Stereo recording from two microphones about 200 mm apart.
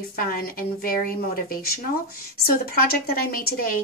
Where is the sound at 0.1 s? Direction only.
45° left (ahead or behind).